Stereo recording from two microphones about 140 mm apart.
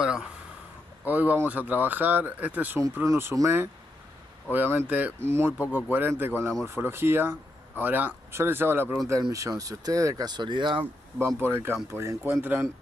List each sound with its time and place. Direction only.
0.0 s speech: 5° right (ahead or behind)
9.2 s speech: 25° right (ahead or behind)
10.8 s speech: 15° right (ahead or behind)